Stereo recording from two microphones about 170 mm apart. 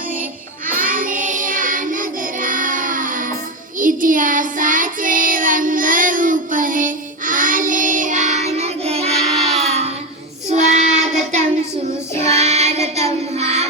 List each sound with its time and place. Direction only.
0.7 s child singing: 50° right (ahead or behind)
12.4 s music: 40° right (ahead or behind)